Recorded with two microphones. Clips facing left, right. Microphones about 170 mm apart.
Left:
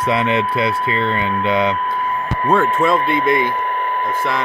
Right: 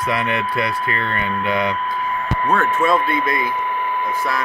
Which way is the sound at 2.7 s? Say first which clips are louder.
Left 1 dB; 25° left (ahead or behind).